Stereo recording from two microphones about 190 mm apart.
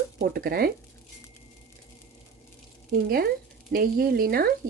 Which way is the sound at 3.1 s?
50° right (ahead or behind).